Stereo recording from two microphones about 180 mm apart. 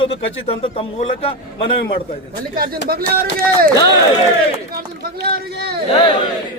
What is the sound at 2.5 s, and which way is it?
Speech, 55° right (ahead or behind).